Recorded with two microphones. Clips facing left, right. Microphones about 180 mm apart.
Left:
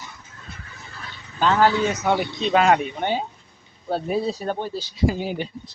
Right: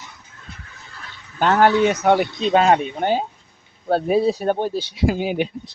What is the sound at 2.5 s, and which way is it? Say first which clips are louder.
Speech: right 2 dB; 25° right (ahead or behind).